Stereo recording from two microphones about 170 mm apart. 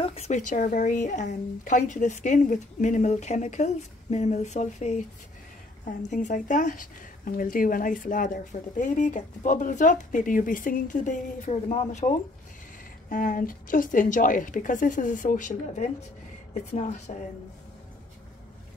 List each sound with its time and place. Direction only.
0.0 s a woman's voice: 40° left (ahead or behind)
17.1 s a woman's voice: 45° left (ahead or behind)